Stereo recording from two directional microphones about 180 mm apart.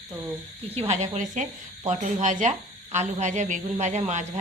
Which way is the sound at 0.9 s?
40° right (ahead or behind).